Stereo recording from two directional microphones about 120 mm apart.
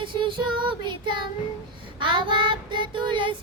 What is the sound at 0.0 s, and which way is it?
Child singing, 40° right (ahead or behind).